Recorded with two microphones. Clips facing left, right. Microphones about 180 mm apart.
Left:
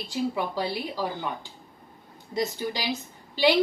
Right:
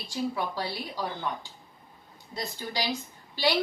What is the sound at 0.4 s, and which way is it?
Speech, 15° left (ahead or behind).